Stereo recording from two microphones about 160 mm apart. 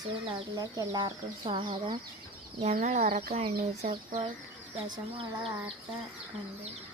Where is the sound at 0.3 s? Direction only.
30° right (ahead or behind).